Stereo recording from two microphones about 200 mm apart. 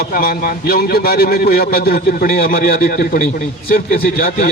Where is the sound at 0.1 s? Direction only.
45° left (ahead or behind).